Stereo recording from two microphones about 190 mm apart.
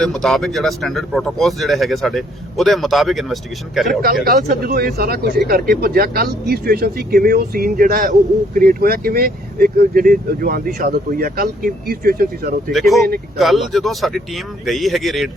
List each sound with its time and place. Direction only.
0.0 s speech: centre (ahead or behind)
4.0 s speech: 50° right (ahead or behind)
12.7 s speech: centre (ahead or behind)